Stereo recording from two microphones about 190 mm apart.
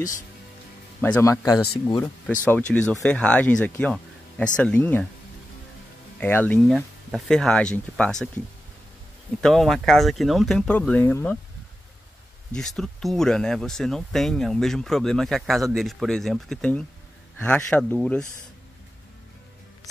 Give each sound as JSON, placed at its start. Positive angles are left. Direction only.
{"t": 1.0, "sound": "speech", "side_deg": 10}
{"t": 2.2, "sound": "speech", "side_deg": 5}
{"t": 6.1, "sound": "speech", "side_deg": 10}
{"t": 9.4, "sound": "speech", "side_deg": 0}
{"t": 12.5, "sound": "speech", "side_deg": 0}